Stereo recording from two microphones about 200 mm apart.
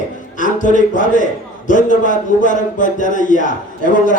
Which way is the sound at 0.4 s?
40° left (ahead or behind).